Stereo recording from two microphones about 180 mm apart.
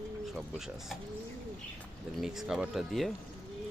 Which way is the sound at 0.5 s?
Centre (ahead or behind).